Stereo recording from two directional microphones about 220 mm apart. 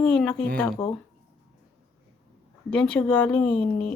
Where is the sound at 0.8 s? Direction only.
15° left (ahead or behind).